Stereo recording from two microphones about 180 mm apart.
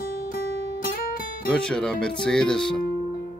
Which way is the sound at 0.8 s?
50° left (ahead or behind).